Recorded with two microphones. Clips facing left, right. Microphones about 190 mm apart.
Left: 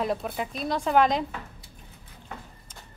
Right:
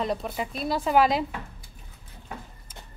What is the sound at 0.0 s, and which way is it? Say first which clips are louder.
A woman's voice: even; centre (ahead or behind).